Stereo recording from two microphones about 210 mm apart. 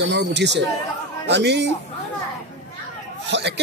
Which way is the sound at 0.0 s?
55° right (ahead or behind).